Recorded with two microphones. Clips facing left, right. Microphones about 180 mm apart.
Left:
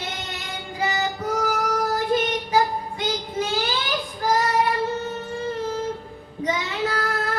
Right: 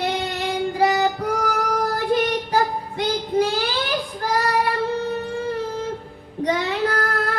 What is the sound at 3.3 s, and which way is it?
Child singing, 60° right (ahead or behind).